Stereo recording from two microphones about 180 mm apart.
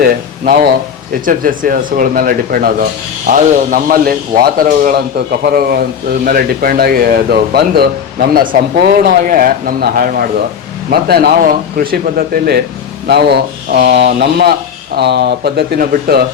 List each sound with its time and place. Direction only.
0.0 s a man's voice: 50° right (ahead or behind)